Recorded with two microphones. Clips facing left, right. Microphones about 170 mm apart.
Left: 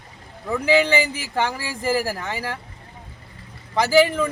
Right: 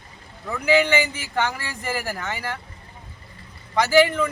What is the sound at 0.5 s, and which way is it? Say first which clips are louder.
Speech: left 1 dB; 30° left (ahead or behind).